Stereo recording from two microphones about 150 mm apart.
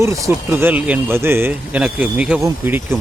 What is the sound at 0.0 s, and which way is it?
A man's voice, 15° right (ahead or behind).